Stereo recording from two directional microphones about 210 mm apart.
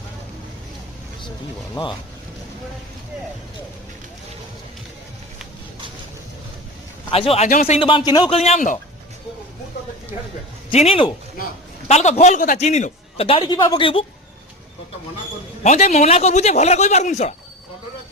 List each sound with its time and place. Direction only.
1.8 s a man's voice: 25° left (ahead or behind)
7.1 s a man's voice: 30° left (ahead or behind)
10.7 s a man's voice: 25° left (ahead or behind)
15.6 s a man's voice: 35° left (ahead or behind)